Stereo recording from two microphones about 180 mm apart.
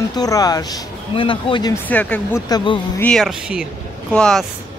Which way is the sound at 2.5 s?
25° left (ahead or behind).